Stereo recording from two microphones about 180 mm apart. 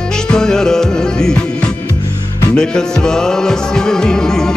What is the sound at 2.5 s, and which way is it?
Music, 5° left (ahead or behind).